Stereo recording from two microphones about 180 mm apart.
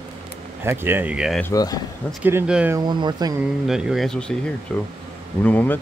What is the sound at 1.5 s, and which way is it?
Speech, 20° left (ahead or behind).